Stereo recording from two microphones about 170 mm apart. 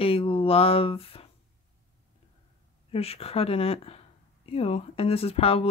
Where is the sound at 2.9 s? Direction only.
35° left (ahead or behind).